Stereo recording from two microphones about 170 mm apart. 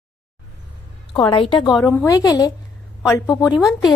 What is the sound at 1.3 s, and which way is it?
A woman's voice, 30° left (ahead or behind).